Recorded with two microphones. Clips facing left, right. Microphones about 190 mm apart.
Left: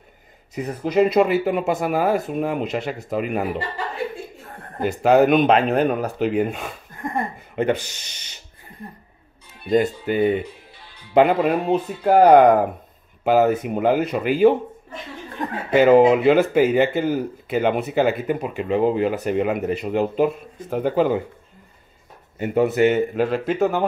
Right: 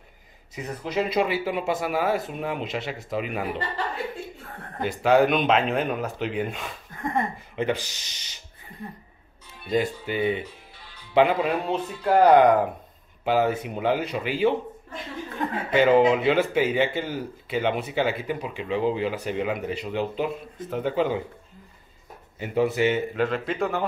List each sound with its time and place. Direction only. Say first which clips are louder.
0.6 s speech: left 8 dB; 50° left (ahead or behind)
5.0 s speech: left 5 dB; 45° left (ahead or behind)
9.7 s speech: left 6 dB; 45° left (ahead or behind)
15.7 s speech: left 5 dB; 45° left (ahead or behind)
22.4 s speech: left 5 dB; 50° left (ahead or behind)